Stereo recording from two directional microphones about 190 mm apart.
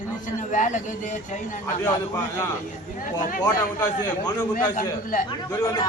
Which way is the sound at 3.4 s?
15° left (ahead or behind).